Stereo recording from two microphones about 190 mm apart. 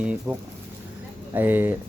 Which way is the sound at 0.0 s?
5° right (ahead or behind).